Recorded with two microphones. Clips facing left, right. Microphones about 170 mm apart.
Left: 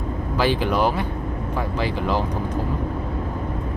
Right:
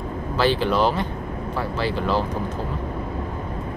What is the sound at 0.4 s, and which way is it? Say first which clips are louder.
Speech: right 1 dB; 15° left (ahead or behind).